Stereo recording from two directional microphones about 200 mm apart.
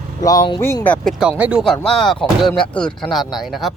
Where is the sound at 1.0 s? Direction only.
5° right (ahead or behind).